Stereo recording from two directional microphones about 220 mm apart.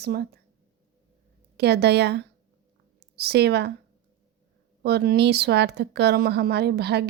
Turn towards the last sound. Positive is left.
turn(degrees=-50)  # may be behind; listen again after turning